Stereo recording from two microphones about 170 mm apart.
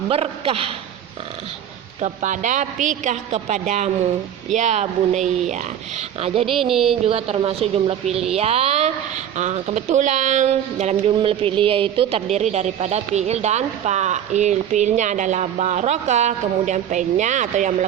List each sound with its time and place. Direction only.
0.1 s a woman's voice: 35° right (ahead or behind)
2.0 s a woman's voice: 45° right (ahead or behind)
6.4 s a sound: centre (ahead or behind)
7.0 s a woman's voice: 35° right (ahead or behind)